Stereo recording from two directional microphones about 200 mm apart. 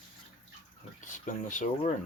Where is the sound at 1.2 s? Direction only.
40° left (ahead or behind).